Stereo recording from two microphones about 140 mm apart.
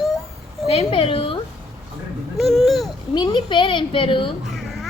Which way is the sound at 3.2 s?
35° left (ahead or behind).